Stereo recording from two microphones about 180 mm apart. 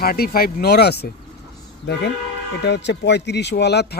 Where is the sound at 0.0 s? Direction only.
55° left (ahead or behind).